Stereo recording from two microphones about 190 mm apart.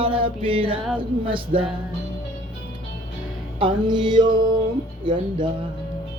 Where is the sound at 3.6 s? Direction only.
25° right (ahead or behind).